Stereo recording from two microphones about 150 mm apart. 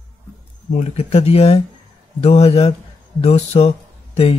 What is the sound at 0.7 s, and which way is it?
Speech, 45° left (ahead or behind).